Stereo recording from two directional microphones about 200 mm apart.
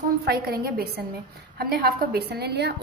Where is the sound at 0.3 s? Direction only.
50° right (ahead or behind).